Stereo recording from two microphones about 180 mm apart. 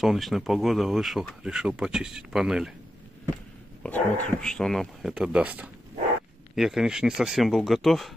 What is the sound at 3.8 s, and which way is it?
Speech, 5° left (ahead or behind).